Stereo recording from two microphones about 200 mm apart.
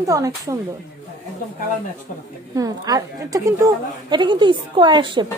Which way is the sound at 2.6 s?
15° right (ahead or behind).